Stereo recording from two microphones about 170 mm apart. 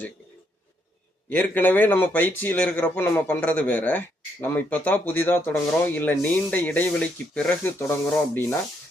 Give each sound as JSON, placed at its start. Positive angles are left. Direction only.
{"t": 1.3, "sound": "speech", "side_deg": 10}